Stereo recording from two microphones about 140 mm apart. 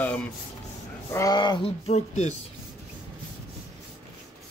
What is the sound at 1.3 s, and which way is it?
Speech, 35° left (ahead or behind).